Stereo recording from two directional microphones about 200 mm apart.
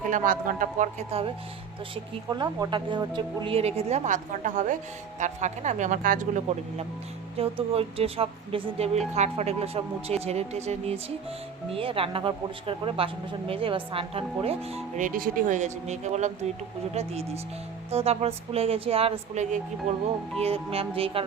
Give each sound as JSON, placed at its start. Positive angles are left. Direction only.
{"t": 0.1, "sound": "speech", "side_deg": -40}
{"t": 2.3, "sound": "a woman's voice", "side_deg": -20}